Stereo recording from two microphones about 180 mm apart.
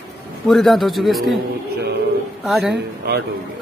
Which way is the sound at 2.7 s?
65° right (ahead or behind).